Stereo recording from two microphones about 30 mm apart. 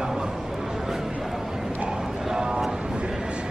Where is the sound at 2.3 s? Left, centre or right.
Right.